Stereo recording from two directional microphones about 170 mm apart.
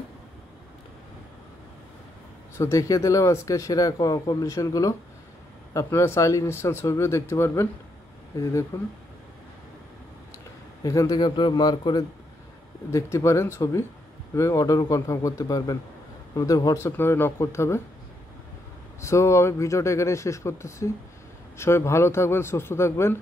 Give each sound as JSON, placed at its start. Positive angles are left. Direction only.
{"t": 2.5, "sound": "speech", "side_deg": 15}
{"t": 8.7, "sound": "speech", "side_deg": 15}
{"t": 10.8, "sound": "speech", "side_deg": 20}
{"t": 18.9, "sound": "speech", "side_deg": 15}